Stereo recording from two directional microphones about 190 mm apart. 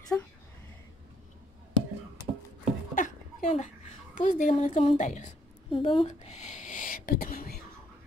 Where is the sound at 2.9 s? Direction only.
40° left (ahead or behind).